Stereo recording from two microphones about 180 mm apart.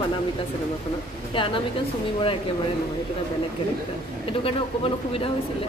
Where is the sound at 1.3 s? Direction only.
30° left (ahead or behind).